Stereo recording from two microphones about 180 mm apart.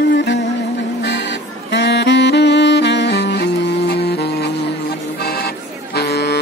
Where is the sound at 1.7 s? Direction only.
70° left (ahead or behind).